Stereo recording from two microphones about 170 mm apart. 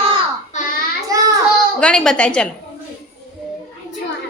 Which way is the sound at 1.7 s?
5° left (ahead or behind).